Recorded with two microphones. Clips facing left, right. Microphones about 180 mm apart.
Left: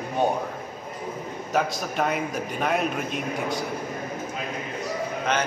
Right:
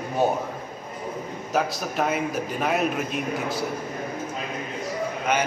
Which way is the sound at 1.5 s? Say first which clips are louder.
Even; centre (ahead or behind).